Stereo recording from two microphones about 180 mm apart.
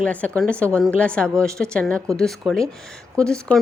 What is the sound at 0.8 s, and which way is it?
Speech, 5° left (ahead or behind).